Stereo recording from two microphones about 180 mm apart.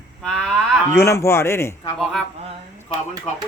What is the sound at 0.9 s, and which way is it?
Speech, 15° left (ahead or behind).